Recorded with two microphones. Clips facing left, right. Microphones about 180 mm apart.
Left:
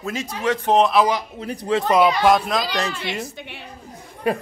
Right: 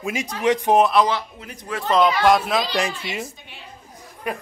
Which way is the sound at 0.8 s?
Centre (ahead or behind).